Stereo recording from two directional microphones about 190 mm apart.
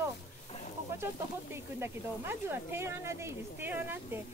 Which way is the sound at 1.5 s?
10° right (ahead or behind).